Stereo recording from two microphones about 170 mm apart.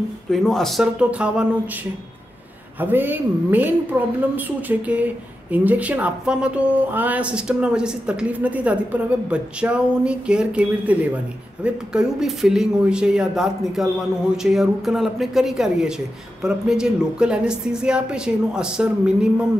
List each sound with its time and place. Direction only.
0.3 s a woman's voice: centre (ahead or behind)
2.8 s a woman's voice: 10° right (ahead or behind)